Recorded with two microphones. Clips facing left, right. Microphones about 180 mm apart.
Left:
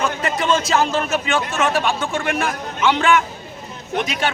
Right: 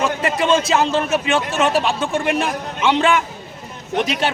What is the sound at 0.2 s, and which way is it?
A man's voice, 25° right (ahead or behind).